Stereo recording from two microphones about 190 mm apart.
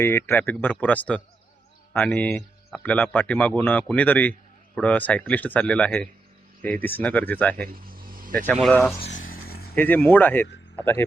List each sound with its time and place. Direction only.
0.0 s a man's voice: 15° left (ahead or behind)
7.5 s vehicle: 50° right (ahead or behind)
8.5 s speech: 5° left (ahead or behind)
9.3 s vehicle: 55° left (ahead or behind)
9.7 s a man's voice: 10° left (ahead or behind)